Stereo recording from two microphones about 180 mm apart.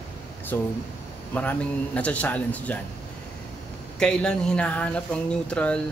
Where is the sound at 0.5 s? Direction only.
15° left (ahead or behind).